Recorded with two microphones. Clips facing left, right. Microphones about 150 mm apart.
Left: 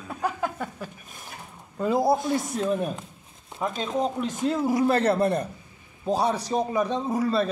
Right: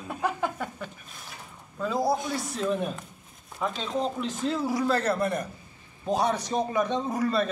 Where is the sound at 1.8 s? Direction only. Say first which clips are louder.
Left 4 dB; 25° left (ahead or behind).